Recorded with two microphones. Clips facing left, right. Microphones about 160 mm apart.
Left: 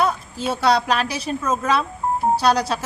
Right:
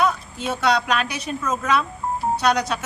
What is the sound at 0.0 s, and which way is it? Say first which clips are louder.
A woman's voice: left 1 dB; 30° left (ahead or behind).